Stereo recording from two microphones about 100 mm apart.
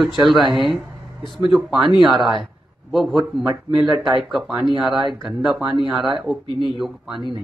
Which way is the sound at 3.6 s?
45° right (ahead or behind).